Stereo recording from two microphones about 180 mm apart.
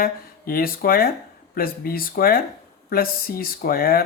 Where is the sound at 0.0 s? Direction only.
55° left (ahead or behind).